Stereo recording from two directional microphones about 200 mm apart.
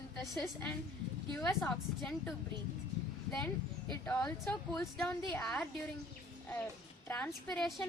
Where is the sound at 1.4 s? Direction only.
15° left (ahead or behind).